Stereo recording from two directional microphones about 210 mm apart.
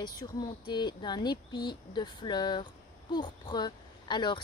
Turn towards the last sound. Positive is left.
turn(degrees=20)  # may be behind; listen again after turning